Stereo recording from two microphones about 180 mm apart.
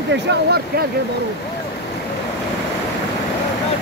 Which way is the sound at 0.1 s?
65° right (ahead or behind).